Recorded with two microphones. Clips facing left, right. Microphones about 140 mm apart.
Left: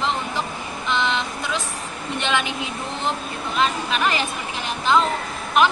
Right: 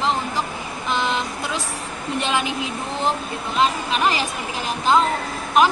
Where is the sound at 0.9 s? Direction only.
40° right (ahead or behind).